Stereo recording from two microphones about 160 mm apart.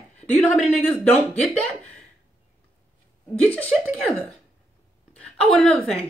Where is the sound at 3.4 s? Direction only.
10° left (ahead or behind).